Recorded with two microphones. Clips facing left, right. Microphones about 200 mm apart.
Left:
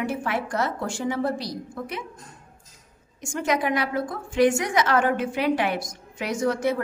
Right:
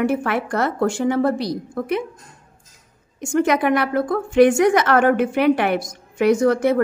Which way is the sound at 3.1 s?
60° right (ahead or behind).